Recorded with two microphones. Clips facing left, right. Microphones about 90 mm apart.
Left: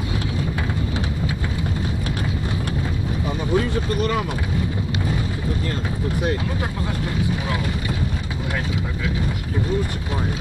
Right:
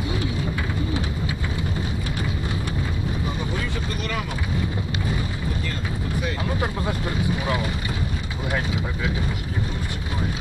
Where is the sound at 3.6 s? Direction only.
40° left (ahead or behind).